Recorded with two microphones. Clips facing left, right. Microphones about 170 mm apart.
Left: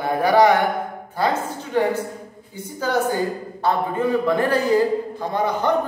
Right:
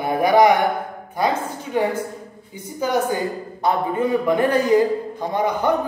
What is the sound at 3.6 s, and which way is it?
A man's voice, 15° right (ahead or behind).